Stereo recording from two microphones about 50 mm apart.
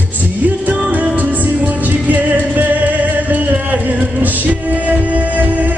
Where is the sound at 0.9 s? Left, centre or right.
Right.